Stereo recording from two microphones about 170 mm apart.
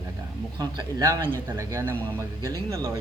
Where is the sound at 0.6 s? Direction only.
20° right (ahead or behind).